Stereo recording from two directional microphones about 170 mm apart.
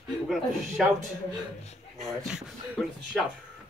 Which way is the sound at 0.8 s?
Centre (ahead or behind).